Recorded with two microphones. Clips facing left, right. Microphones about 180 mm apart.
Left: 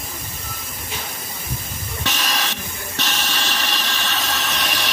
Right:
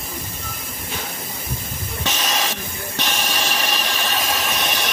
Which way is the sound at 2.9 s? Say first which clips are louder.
Right 2 dB; 50° right (ahead or behind).